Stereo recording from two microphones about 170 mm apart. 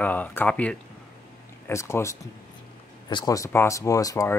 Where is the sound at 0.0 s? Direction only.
10° left (ahead or behind).